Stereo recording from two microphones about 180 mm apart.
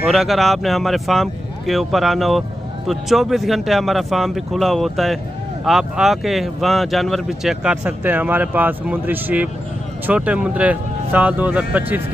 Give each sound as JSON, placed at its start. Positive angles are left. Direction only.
{"t": 0.1, "sound": "speech", "side_deg": 0}